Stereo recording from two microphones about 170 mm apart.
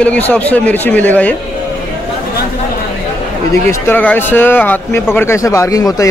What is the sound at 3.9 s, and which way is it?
Speech, 10° left (ahead or behind).